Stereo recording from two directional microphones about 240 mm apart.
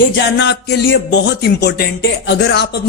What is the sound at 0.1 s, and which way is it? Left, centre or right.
Speech, left.